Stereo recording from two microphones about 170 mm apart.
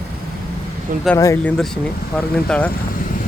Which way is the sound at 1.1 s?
20° left (ahead or behind).